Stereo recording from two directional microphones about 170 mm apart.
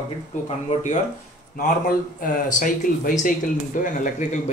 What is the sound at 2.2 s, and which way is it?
Speech, 50° left (ahead or behind).